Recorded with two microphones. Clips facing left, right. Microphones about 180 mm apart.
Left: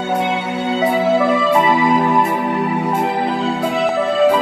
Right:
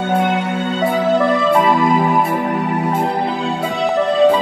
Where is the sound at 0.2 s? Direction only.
55° right (ahead or behind).